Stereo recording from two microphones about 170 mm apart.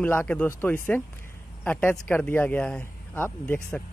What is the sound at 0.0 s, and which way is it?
Speech, 10° left (ahead or behind).